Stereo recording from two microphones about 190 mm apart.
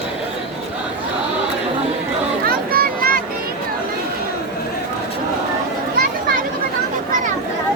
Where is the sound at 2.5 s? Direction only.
50° right (ahead or behind).